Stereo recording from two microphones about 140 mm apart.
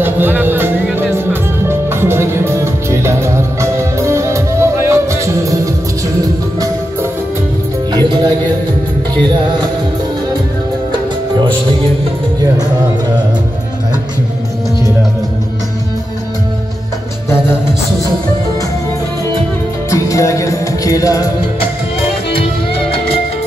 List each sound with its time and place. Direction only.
0.0 s music: 15° right (ahead or behind); by 8.3 s 30° right (ahead or behind)
11.3 s music: 35° right (ahead or behind)
19.9 s music: 20° left (ahead or behind)